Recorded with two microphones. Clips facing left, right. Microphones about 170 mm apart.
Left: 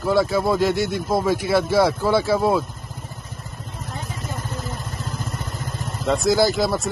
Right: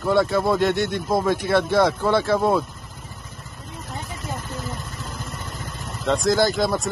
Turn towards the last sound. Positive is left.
turn(degrees=5)  # may be behind; listen again after turning